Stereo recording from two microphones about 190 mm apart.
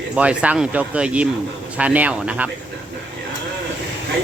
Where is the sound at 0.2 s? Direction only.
5° right (ahead or behind).